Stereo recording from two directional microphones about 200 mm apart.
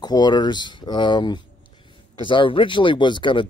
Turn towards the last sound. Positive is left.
turn(degrees=25)  # may be behind; listen again after turning